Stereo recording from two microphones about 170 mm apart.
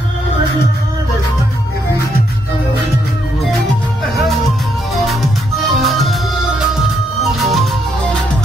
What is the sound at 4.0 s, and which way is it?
Music, centre (ahead or behind).